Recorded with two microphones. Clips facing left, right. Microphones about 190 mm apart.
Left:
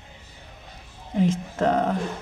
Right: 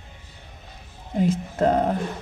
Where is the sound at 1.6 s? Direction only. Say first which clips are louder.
Right 2 dB; 35° right (ahead or behind).